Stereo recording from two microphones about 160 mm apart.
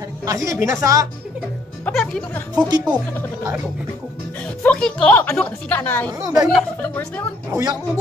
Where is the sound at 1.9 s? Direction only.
Centre (ahead or behind).